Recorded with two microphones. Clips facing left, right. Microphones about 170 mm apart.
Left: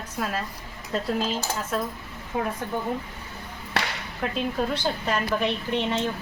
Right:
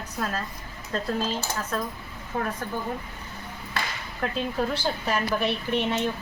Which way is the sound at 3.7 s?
75° left (ahead or behind).